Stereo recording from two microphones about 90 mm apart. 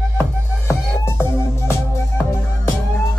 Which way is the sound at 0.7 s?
30° left (ahead or behind).